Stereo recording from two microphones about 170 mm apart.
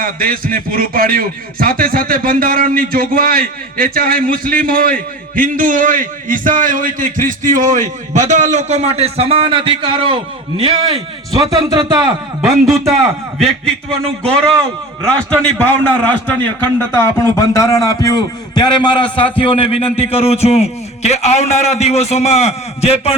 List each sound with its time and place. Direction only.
0.0 s a man's voice: 60° right (ahead or behind); by 11.0 s 30° right (ahead or behind)
11.3 s a man's voice: 20° right (ahead or behind)
15.0 s a man's voice: 5° left (ahead or behind); by 23.1 s 35° left (ahead or behind)